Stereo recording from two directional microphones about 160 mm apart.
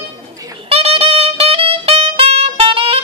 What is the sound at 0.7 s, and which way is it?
Music, 35° right (ahead or behind).